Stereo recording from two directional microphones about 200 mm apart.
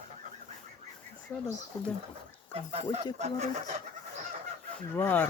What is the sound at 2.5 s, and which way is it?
Fowl, 30° right (ahead or behind).